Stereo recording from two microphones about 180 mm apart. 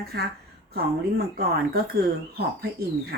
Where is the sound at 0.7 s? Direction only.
60° right (ahead or behind).